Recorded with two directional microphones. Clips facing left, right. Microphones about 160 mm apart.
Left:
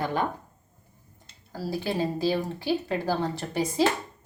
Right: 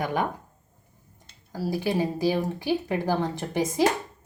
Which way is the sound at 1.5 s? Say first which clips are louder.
Right 3 dB; 15° right (ahead or behind).